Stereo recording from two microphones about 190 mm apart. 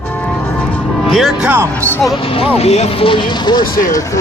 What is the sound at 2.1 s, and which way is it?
Speech, 30° left (ahead or behind).